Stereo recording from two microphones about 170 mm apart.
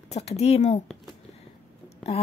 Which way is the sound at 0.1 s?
35° left (ahead or behind).